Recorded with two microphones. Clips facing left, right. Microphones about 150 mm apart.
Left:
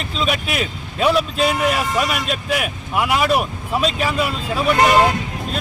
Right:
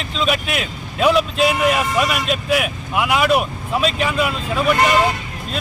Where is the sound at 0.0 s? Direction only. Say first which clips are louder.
Right 1 dB; centre (ahead or behind).